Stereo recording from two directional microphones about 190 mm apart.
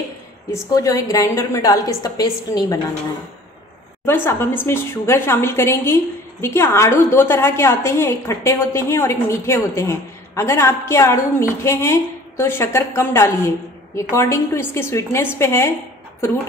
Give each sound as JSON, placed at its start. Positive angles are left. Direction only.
{"t": 0.5, "sound": "a woman's voice", "side_deg": 15}
{"t": 4.0, "sound": "a woman's voice", "side_deg": 10}